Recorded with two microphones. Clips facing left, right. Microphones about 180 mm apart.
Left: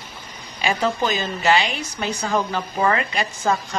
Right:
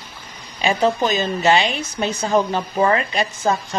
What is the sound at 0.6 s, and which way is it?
A woman's voice, 25° right (ahead or behind).